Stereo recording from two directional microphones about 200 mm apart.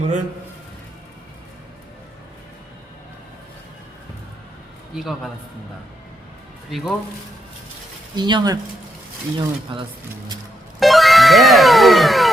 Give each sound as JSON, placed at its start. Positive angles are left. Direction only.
{"t": 0.0, "sound": "a man's voice", "side_deg": -40}
{"t": 4.9, "sound": "a man's voice", "side_deg": 0}
{"t": 6.7, "sound": "a man's voice", "side_deg": 0}
{"t": 8.1, "sound": "speech", "side_deg": -20}
{"t": 9.7, "sound": "speech", "side_deg": -25}
{"t": 10.8, "sound": "music", "side_deg": 0}